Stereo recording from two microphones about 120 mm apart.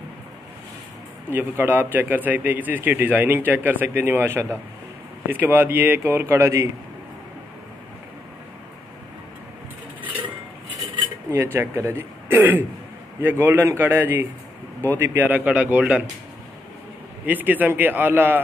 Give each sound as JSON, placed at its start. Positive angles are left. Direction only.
{"t": 1.3, "sound": "a man's voice", "side_deg": -15}
{"t": 11.3, "sound": "a man's voice", "side_deg": -20}
{"t": 17.3, "sound": "a man's voice", "side_deg": -15}